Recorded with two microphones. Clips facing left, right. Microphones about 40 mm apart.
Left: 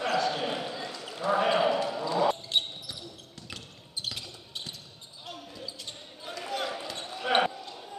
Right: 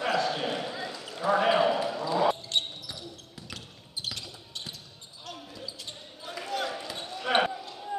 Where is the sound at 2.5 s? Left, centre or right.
Centre.